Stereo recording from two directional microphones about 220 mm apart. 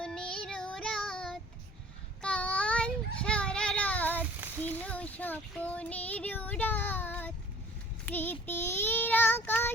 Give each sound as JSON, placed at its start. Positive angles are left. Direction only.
{"t": 0.0, "sound": "child singing", "side_deg": 5}